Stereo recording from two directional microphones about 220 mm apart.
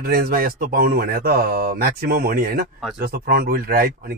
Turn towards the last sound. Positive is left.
turn(degrees=-40)  # may be behind; listen again after turning